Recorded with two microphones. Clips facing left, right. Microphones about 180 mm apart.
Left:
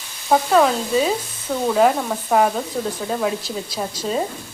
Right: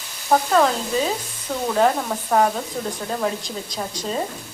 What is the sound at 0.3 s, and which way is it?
Speech, 5° left (ahead or behind).